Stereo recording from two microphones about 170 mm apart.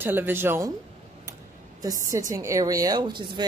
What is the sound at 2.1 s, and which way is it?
A woman's voice, 20° right (ahead or behind).